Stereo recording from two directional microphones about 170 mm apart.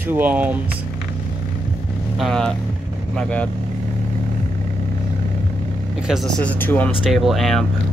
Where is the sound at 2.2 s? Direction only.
5° left (ahead or behind).